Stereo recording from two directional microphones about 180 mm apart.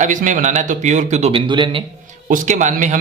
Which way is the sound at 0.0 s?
45° right (ahead or behind).